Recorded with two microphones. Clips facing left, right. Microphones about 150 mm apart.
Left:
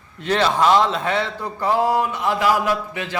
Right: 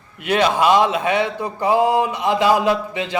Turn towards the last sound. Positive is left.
turn(degrees=-20)  # may be behind; listen again after turning